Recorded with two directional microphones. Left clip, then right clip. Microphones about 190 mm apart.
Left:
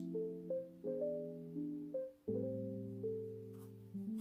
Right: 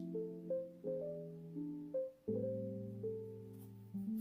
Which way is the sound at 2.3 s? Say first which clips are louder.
Left 1 dB; centre (ahead or behind).